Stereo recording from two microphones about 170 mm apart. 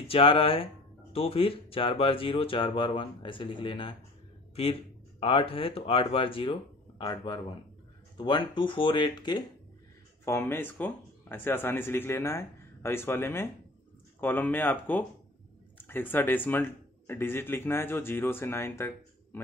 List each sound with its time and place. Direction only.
0.1 s speech: 35° left (ahead or behind)
10.2 s speech: 15° left (ahead or behind)